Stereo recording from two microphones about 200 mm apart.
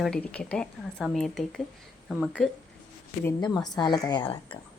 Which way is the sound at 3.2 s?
15° left (ahead or behind).